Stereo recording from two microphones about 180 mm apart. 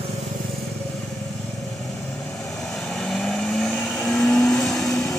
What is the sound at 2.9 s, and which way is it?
Vehicle, centre (ahead or behind).